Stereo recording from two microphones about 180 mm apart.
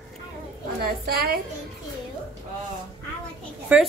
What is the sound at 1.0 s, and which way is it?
Speech, 55° right (ahead or behind).